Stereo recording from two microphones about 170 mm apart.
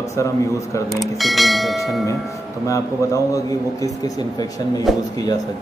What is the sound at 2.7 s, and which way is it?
Speech, 20° left (ahead or behind).